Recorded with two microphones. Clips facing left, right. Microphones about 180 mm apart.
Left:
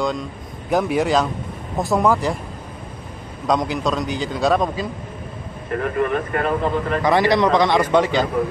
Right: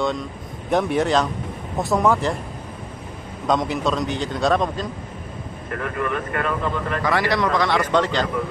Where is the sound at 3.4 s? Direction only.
Centre (ahead or behind).